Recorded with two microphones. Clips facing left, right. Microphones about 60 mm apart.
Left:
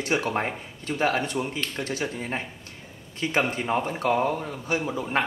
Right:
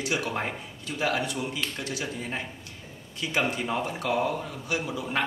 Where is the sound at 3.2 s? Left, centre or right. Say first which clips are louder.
Left 3 dB; left.